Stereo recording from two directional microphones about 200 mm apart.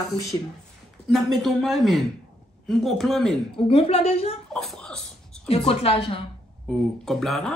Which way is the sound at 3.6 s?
30° left (ahead or behind).